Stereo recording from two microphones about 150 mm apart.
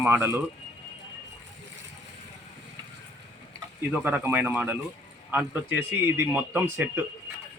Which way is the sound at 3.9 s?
10° right (ahead or behind).